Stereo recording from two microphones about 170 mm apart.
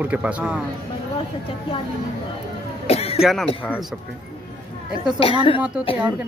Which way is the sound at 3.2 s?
Centre (ahead or behind).